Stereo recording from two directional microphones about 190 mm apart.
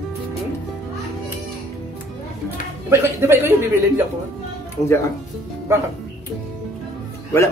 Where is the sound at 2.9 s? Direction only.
10° right (ahead or behind).